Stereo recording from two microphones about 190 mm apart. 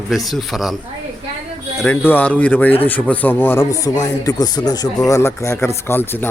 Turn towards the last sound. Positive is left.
turn(degrees=10)  # may be behind; listen again after turning